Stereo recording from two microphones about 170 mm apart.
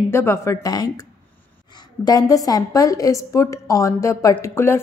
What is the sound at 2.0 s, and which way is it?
A woman's voice, 20° left (ahead or behind).